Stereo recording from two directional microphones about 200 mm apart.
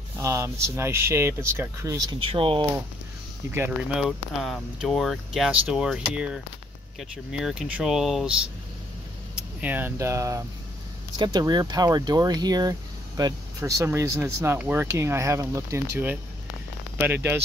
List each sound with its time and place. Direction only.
0.2 s speech: 15° right (ahead or behind)
2.2 s speech: 25° right (ahead or behind)
3.5 s speech: 10° right (ahead or behind)
4.0 s speech: centre (ahead or behind)